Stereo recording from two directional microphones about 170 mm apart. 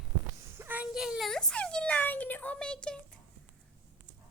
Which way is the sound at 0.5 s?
10° right (ahead or behind).